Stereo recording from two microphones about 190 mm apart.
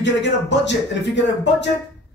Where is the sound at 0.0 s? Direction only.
70° left (ahead or behind).